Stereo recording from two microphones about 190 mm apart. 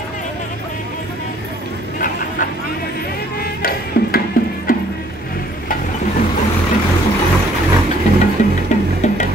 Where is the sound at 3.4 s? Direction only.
50° left (ahead or behind).